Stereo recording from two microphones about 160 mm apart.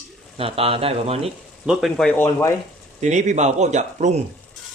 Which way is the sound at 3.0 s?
45° right (ahead or behind).